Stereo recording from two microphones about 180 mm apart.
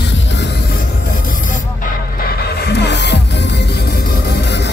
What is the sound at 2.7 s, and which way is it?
Music, 70° left (ahead or behind).